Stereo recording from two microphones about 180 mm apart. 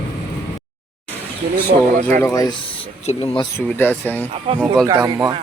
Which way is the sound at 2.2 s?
20° left (ahead or behind).